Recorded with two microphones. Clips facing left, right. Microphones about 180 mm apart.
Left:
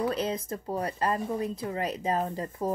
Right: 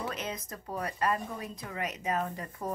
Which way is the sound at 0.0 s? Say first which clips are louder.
Left 8 dB; 30° left (ahead or behind).